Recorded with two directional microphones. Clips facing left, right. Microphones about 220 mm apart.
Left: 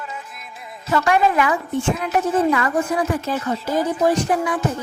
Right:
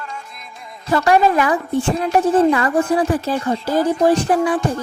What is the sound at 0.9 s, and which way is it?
A woman's voice, 35° right (ahead or behind).